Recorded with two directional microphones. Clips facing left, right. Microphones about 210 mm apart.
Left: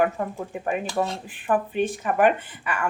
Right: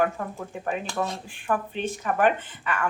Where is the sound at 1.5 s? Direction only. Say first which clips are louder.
Left 4 dB; 10° left (ahead or behind).